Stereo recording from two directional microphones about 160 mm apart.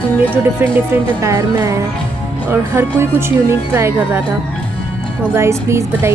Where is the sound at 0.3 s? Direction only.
10° right (ahead or behind).